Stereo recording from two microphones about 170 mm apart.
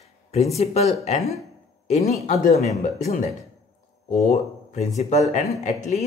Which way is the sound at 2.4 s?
45° left (ahead or behind).